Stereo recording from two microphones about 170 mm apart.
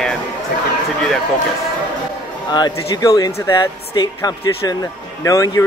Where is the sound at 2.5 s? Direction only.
25° left (ahead or behind).